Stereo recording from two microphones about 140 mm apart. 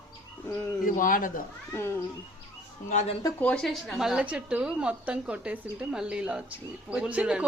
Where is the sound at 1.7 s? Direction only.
20° left (ahead or behind).